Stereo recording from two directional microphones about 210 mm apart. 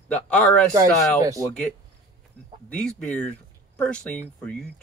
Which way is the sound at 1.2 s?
15° right (ahead or behind).